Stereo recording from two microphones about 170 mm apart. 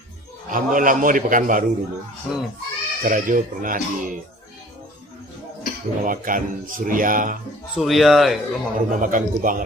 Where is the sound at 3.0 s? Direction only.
50° right (ahead or behind).